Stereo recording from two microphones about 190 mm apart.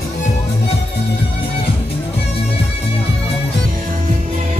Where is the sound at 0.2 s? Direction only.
35° left (ahead or behind).